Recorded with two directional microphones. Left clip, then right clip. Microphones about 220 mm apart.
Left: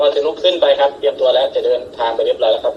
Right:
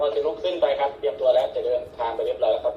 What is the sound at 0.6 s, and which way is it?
Speech, 50° left (ahead or behind).